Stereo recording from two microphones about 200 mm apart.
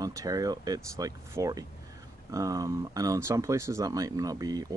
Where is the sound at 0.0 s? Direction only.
15° right (ahead or behind).